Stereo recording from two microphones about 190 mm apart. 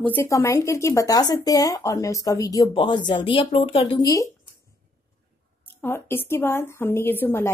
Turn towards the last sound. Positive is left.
turn(degrees=10)  # may be behind; listen again after turning